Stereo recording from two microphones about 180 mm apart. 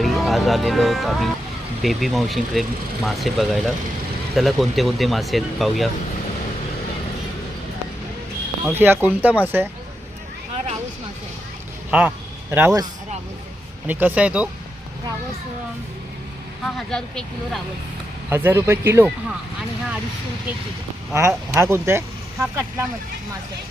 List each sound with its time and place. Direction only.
0.0 s speech: centre (ahead or behind)
8.6 s speech: 10° right (ahead or behind)
11.9 s a man's voice: 10° right (ahead or behind)
13.8 s speech: 10° right (ahead or behind)
16.6 s speech: 5° left (ahead or behind)
18.3 s speech: 15° right (ahead or behind)
21.1 s speech: 15° right (ahead or behind)